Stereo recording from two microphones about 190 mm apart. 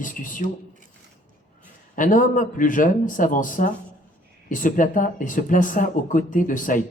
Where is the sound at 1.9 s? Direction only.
45° left (ahead or behind).